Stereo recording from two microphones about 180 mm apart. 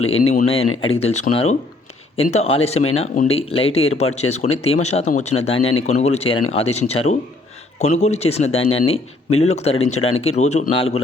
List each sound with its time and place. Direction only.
0.4 s speech: 30° left (ahead or behind)